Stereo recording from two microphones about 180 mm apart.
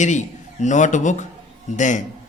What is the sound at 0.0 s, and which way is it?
A man's voice, 40° left (ahead or behind).